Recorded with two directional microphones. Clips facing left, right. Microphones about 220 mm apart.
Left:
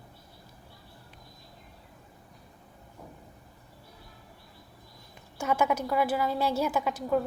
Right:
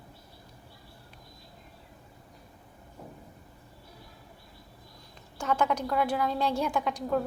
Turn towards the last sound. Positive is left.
turn(degrees=5)  # may be behind; listen again after turning